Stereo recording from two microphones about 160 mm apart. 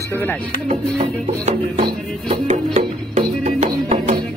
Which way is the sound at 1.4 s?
40° right (ahead or behind).